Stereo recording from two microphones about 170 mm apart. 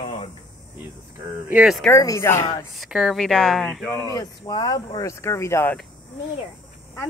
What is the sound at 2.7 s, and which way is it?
Speech, centre (ahead or behind).